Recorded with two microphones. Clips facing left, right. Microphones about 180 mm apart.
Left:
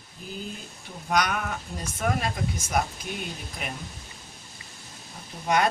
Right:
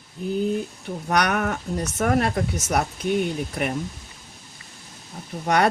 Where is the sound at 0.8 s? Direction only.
70° right (ahead or behind).